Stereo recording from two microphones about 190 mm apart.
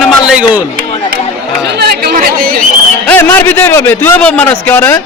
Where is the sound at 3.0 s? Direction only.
10° left (ahead or behind).